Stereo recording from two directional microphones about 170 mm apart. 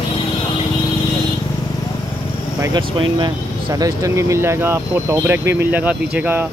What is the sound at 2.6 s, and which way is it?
Speech, 25° right (ahead or behind).